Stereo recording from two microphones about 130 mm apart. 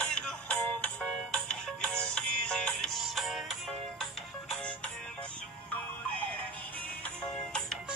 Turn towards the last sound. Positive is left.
turn(degrees=5)  # may be behind; listen again after turning